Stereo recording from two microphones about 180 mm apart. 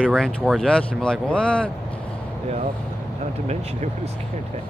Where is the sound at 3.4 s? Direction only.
35° right (ahead or behind).